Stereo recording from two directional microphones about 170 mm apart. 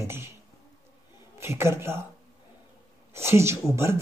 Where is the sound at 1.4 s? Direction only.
15° right (ahead or behind).